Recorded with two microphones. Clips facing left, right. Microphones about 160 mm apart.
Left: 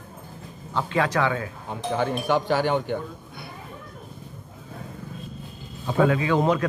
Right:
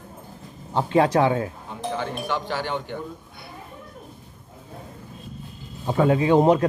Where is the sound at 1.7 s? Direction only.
50° left (ahead or behind).